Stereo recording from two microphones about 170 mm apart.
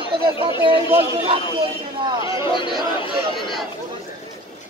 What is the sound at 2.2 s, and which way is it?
Speech, 30° left (ahead or behind).